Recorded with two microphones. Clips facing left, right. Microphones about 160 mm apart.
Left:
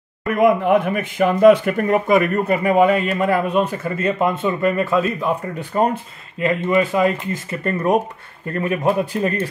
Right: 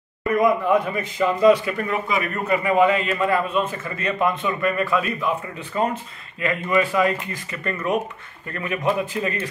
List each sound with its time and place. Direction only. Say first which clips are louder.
0.3 s a man's voice: left 3 dB; 60° left (ahead or behind)
3.5 s a man's voice: left 5 dB; 30° left (ahead or behind)
6.4 s a man's voice: left 4 dB; 25° left (ahead or behind)
7.6 s a man's voice: left 5 dB; 40° left (ahead or behind)